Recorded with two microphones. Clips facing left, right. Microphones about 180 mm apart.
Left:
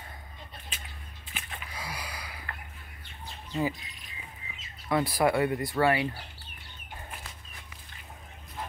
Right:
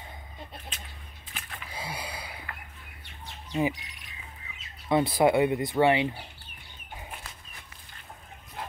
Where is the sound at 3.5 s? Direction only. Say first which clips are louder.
Right 3 dB; 15° right (ahead or behind).